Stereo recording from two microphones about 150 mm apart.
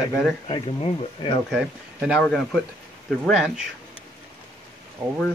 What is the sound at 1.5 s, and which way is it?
Speech, centre (ahead or behind).